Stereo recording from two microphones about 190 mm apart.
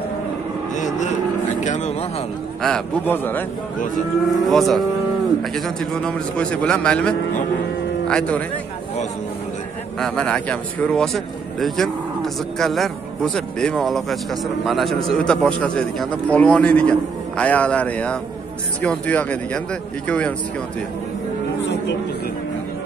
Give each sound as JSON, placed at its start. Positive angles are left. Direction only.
{"t": 0.7, "sound": "a sound", "side_deg": 40}
{"t": 1.6, "sound": "speech", "side_deg": 40}
{"t": 2.6, "sound": "a man's voice", "side_deg": 5}
{"t": 9.9, "sound": "a man's voice", "side_deg": 5}